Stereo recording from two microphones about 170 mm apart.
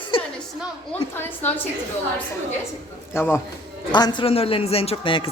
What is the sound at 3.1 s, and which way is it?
Speech, 15° left (ahead or behind).